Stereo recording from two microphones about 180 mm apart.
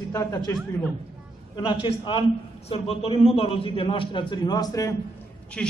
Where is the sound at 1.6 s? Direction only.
30° left (ahead or behind).